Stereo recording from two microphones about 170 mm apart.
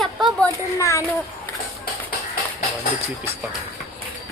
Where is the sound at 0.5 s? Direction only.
20° left (ahead or behind).